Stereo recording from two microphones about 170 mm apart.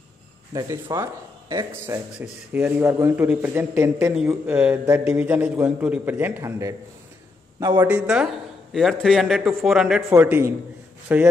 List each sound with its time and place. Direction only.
0.5 s speech: 20° right (ahead or behind)
2.1 s a man's voice: 10° right (ahead or behind)
7.9 s a man's voice: 5° right (ahead or behind)
10.0 s a man's voice: 15° right (ahead or behind)